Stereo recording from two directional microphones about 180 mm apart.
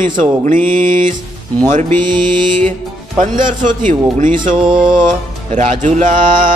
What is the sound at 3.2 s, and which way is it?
A man's voice, 45° right (ahead or behind).